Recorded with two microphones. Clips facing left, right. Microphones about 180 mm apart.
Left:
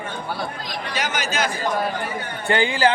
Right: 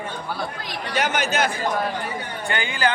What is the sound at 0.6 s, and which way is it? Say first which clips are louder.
Speech: right 2 dB; 60° right (ahead or behind).